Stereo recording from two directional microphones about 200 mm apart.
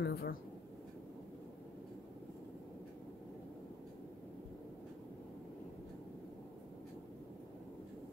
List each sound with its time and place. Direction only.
0.0 s speech: 50° left (ahead or behind)